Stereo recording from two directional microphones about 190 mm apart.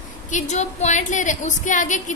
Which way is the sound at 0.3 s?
40° left (ahead or behind).